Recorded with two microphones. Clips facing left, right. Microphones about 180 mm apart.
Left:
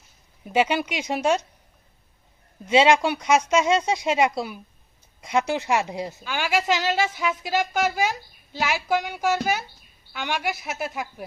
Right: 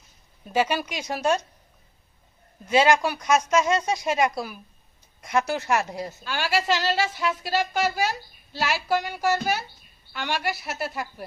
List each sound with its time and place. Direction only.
0.4 s speech: 20° left (ahead or behind)
2.6 s a woman's voice: 25° left (ahead or behind)